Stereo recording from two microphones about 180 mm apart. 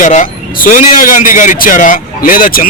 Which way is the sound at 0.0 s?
45° left (ahead or behind).